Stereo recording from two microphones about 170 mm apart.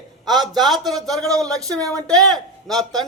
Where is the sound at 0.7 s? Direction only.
25° right (ahead or behind).